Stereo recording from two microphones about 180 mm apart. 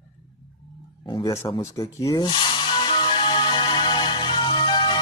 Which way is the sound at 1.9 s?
20° left (ahead or behind).